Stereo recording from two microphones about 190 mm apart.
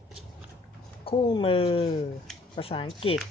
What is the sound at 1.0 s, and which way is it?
Speech, 30° left (ahead or behind).